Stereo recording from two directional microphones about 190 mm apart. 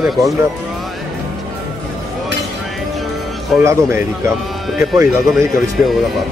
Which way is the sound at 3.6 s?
15° right (ahead or behind).